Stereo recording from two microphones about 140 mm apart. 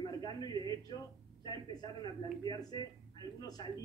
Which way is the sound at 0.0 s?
30° left (ahead or behind).